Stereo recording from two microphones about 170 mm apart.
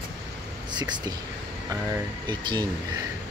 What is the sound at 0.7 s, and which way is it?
Speech, 25° right (ahead or behind).